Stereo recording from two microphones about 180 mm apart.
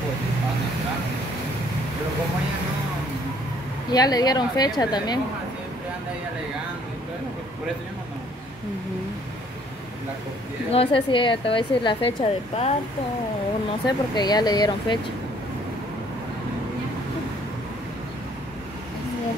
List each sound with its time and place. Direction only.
3.9 s a woman's voice: 20° left (ahead or behind)
10.7 s a woman's voice: 30° left (ahead or behind)
13.8 s a woman's voice: 25° left (ahead or behind)